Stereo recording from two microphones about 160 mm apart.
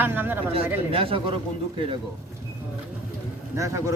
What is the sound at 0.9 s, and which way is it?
Speech, 35° right (ahead or behind).